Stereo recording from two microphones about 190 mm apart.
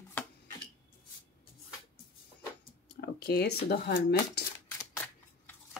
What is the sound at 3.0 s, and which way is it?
Speech, 55° left (ahead or behind).